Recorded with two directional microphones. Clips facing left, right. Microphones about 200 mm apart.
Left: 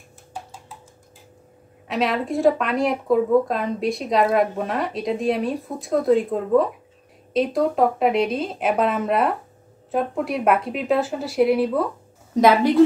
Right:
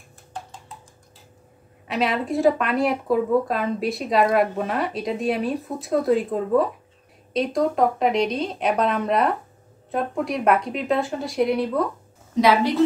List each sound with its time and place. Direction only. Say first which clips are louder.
0.3 s a sound: even; 5° left (ahead or behind)
1.9 s speech: left 1 dB; centre (ahead or behind)
12.4 s a woman's voice: left 2 dB; 50° left (ahead or behind)